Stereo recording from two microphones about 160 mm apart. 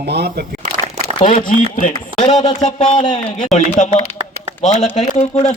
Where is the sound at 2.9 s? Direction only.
30° left (ahead or behind).